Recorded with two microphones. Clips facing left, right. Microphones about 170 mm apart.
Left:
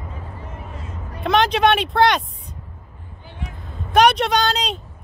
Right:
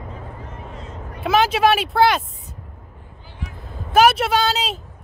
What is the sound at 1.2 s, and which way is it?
Speech, 5° right (ahead or behind).